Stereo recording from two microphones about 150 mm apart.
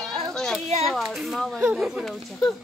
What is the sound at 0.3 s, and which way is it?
Children playing, 5° left (ahead or behind).